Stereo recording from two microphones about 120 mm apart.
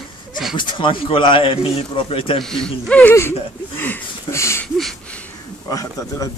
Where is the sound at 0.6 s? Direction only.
45° left (ahead or behind).